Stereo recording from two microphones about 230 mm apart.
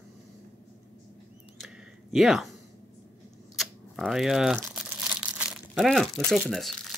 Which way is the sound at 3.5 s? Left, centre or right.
Centre.